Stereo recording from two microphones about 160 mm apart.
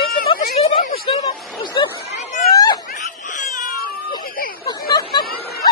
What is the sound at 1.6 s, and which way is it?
Chatter, 30° left (ahead or behind).